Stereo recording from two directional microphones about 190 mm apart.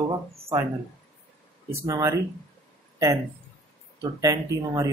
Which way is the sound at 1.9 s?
15° right (ahead or behind).